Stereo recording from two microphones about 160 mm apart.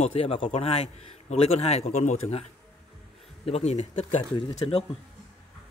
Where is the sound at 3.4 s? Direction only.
40° left (ahead or behind).